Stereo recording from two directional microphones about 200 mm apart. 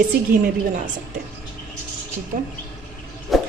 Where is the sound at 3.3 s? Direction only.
Centre (ahead or behind).